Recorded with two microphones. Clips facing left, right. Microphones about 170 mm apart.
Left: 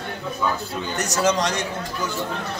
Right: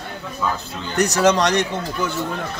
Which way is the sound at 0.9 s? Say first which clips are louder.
Right 5 dB; 65° right (ahead or behind).